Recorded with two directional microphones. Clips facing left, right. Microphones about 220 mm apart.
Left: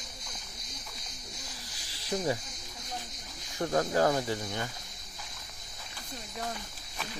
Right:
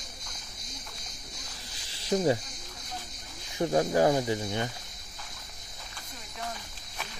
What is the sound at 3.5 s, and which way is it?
Speech, 15° right (ahead or behind).